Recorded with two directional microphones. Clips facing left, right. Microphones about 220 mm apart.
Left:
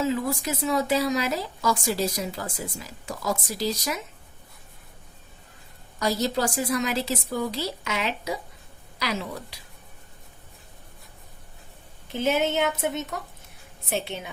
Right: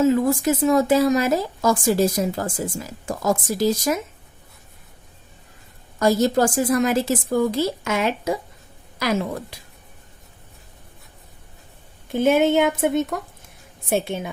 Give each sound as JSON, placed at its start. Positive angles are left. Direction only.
{"t": 0.0, "sound": "a woman's voice", "side_deg": -50}
{"t": 6.0, "sound": "a woman's voice", "side_deg": -50}
{"t": 12.1, "sound": "a woman's voice", "side_deg": -50}